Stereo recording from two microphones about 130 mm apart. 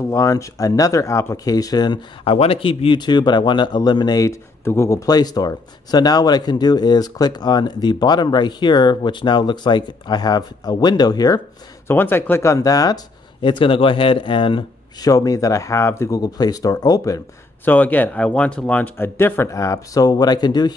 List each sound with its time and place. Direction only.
0.0 s speech: 25° left (ahead or behind)
2.2 s speech: 45° left (ahead or behind); by 11.4 s 30° left (ahead or behind)
11.9 s speech: 15° left (ahead or behind)
13.4 s speech: 40° left (ahead or behind)
15.0 s speech: 25° left (ahead or behind)
17.6 s speech: 15° left (ahead or behind); by 20.7 s 30° left (ahead or behind)